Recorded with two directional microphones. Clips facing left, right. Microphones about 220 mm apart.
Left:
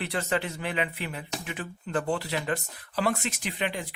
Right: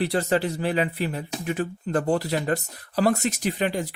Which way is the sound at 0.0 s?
35° right (ahead or behind).